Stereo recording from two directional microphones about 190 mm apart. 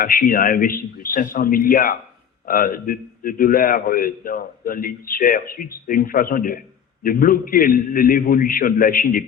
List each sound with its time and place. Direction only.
0.0 s a man's voice: 50° left (ahead or behind)